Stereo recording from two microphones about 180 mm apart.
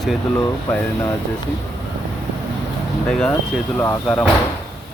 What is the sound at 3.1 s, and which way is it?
Speech, 5° left (ahead or behind).